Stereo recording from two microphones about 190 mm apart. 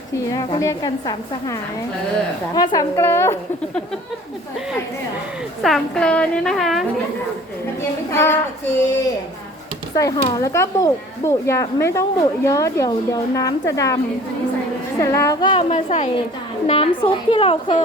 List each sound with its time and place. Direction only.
0.3 s a woman's voice: 20° left (ahead or behind)
2.6 s speech: 15° left (ahead or behind)
5.6 s a woman's voice: centre (ahead or behind)
7.8 s speech: 15° left (ahead or behind)
9.9 s speech: 20° left (ahead or behind)
15.0 s speech: 15° left (ahead or behind)
15.7 s a woman's voice: 35° left (ahead or behind)